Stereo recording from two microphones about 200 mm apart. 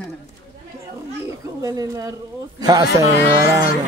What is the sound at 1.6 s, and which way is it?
A woman's voice, 15° right (ahead or behind).